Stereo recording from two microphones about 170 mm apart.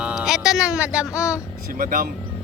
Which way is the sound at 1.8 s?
55° right (ahead or behind).